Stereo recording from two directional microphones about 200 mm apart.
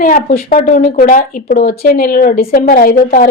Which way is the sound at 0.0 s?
45° left (ahead or behind).